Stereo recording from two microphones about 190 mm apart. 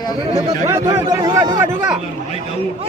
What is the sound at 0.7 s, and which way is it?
Speech, 15° right (ahead or behind).